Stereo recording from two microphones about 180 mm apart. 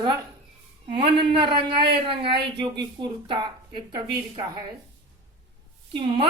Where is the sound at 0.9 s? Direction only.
25° right (ahead or behind).